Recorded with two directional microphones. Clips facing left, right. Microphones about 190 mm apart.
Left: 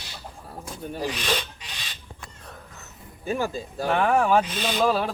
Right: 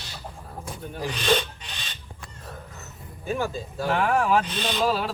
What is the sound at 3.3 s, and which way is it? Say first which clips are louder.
Speech: left 1 dB; 45° left (ahead or behind).